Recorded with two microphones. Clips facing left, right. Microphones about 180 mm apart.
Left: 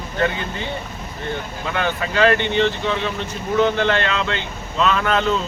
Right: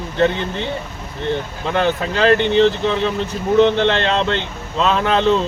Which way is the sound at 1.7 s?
35° right (ahead or behind).